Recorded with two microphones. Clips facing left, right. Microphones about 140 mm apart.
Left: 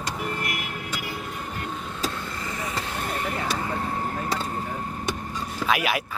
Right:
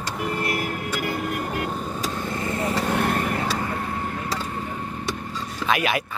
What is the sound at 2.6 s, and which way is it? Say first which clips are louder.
Vehicle: right 9 dB; 65° right (ahead or behind).